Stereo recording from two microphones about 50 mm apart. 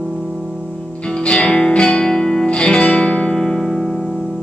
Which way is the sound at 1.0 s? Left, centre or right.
Centre.